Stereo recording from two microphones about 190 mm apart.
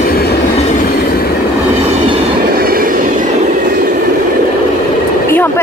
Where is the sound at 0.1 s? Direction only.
50° left (ahead or behind).